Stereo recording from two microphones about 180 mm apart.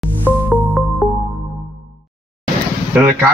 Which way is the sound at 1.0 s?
5° right (ahead or behind).